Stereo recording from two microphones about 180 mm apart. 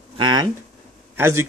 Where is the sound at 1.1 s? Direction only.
15° right (ahead or behind).